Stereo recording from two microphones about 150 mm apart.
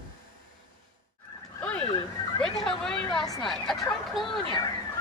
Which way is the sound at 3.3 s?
Centre (ahead or behind).